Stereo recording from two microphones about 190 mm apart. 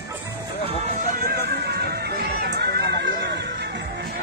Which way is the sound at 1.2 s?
55° right (ahead or behind).